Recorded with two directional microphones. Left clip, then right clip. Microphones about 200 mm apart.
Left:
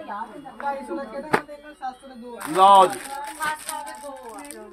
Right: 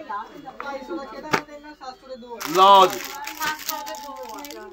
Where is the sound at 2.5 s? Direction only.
15° left (ahead or behind).